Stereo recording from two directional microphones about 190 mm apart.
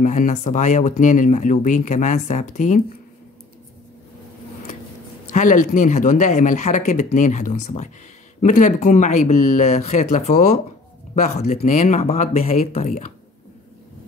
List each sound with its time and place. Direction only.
0.0 s speech: 40° left (ahead or behind)
5.3 s speech: 40° left (ahead or behind)